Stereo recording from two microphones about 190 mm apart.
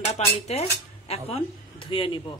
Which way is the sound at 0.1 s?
35° left (ahead or behind).